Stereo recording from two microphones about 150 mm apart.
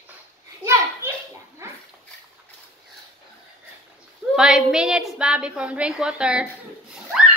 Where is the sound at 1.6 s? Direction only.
20° right (ahead or behind).